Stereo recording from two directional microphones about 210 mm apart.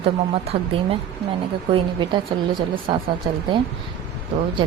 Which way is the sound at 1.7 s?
20° right (ahead or behind).